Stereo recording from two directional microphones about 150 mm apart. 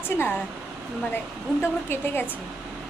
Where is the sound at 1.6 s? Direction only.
15° left (ahead or behind).